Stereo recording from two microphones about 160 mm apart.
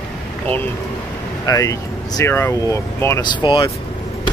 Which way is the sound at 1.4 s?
20° left (ahead or behind).